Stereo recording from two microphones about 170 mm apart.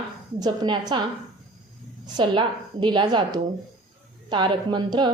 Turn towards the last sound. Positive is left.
turn(degrees=-25)  # may be behind; listen again after turning